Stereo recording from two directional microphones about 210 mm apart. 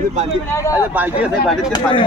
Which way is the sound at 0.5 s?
15° left (ahead or behind).